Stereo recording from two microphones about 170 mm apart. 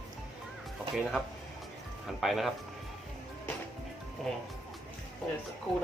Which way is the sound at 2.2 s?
Centre (ahead or behind).